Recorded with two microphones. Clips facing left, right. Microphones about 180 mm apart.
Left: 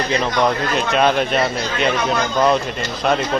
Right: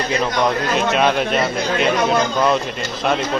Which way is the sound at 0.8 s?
Centre (ahead or behind).